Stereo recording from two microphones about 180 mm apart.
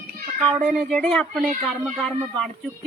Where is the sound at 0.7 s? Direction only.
Centre (ahead or behind).